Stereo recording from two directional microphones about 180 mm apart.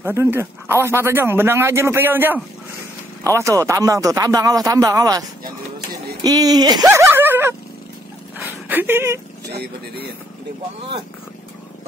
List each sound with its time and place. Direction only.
0.0 s speech: 15° right (ahead or behind)
6.2 s speech: 20° right (ahead or behind)
8.4 s a sound: 10° right (ahead or behind)
9.5 s speech: 65° right (ahead or behind)